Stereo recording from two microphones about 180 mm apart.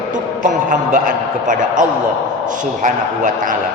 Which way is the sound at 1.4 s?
45° right (ahead or behind).